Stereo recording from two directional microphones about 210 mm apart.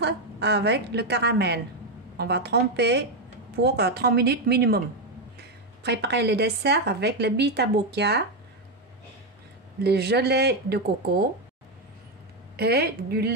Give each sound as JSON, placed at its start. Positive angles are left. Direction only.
{"t": 0.0, "sound": "a woman's voice", "side_deg": -55}
{"t": 5.9, "sound": "a woman's voice", "side_deg": -50}
{"t": 9.8, "sound": "a woman's voice", "side_deg": -50}
{"t": 12.5, "sound": "a woman's voice", "side_deg": -50}